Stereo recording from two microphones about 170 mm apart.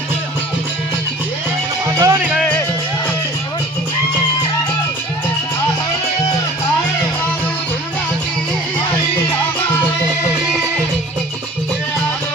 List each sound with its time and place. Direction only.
2.0 s music: 15° right (ahead or behind)
2.3 s music: 5° left (ahead or behind)